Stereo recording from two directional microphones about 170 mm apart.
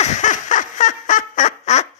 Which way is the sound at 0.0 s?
45° left (ahead or behind).